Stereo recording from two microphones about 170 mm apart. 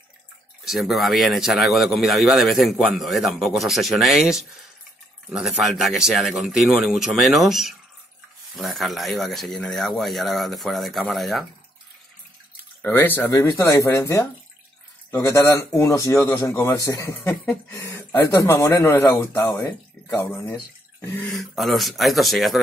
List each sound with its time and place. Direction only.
0.7 s a man's voice: centre (ahead or behind)
12.8 s a man's voice: 10° left (ahead or behind)
21.0 s throat clearing: 10° left (ahead or behind)
21.3 s a man's voice: centre (ahead or behind)